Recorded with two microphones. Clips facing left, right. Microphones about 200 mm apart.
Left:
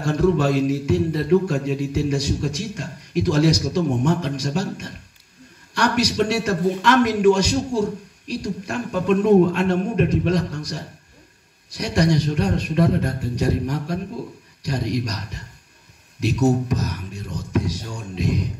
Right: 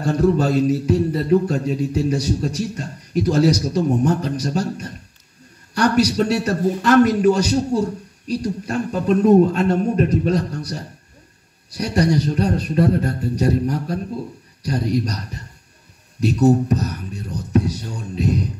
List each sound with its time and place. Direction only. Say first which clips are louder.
0.1 s a man's voice: right 1 dB; 35° right (ahead or behind)
11.7 s a man's voice: right 2 dB; 35° right (ahead or behind)
16.3 s a man's voice: right 4 dB; 35° right (ahead or behind)